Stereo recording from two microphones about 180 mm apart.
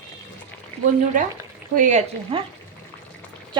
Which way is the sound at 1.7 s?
45° right (ahead or behind).